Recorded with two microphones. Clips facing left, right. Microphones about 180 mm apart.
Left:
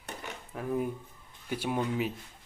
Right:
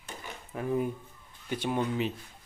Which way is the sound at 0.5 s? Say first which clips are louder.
Right 2 dB; centre (ahead or behind).